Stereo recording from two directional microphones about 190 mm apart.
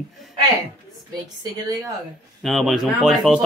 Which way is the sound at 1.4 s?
20° right (ahead or behind).